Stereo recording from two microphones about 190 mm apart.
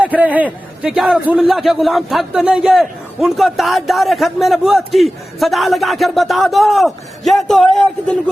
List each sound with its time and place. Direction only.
0.0 s a man's voice: 10° right (ahead or behind)